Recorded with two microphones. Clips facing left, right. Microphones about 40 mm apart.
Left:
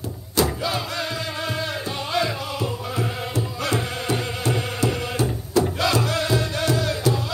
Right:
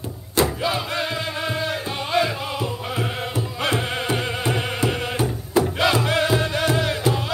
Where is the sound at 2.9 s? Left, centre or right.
Right.